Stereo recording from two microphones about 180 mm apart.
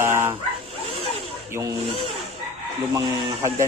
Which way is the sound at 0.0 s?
15° right (ahead or behind).